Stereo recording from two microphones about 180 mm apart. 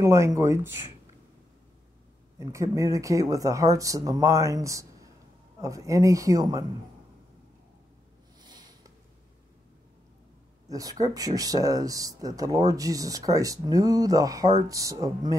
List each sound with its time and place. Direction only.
0.0 s speech: 15° right (ahead or behind)
2.3 s speech: 15° right (ahead or behind)
8.4 s a sound: 25° right (ahead or behind)
10.7 s speech: 20° right (ahead or behind)